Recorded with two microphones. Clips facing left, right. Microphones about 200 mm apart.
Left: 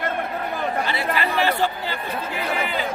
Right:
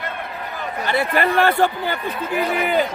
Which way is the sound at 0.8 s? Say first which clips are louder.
Right 5 dB; 50° right (ahead or behind).